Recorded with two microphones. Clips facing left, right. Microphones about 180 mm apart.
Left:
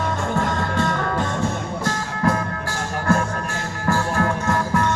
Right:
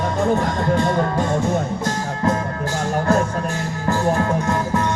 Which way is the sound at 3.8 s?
20° right (ahead or behind).